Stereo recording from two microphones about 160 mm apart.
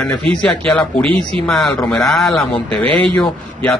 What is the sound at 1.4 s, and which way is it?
Speech, 20° left (ahead or behind).